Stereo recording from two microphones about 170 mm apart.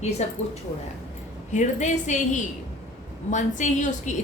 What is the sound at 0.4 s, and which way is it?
Speech, 40° left (ahead or behind).